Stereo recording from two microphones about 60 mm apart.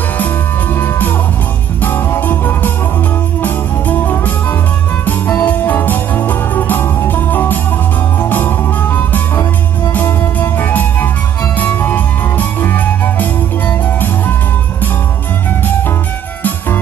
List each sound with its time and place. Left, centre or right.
0.7 s music: left
5.4 s music: left